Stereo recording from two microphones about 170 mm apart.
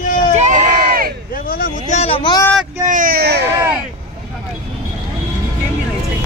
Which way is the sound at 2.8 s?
50° right (ahead or behind).